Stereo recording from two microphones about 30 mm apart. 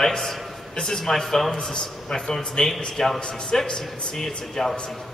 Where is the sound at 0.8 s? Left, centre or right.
Centre.